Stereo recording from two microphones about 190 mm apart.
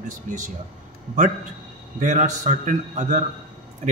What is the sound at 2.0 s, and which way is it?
A man's voice, 40° right (ahead or behind).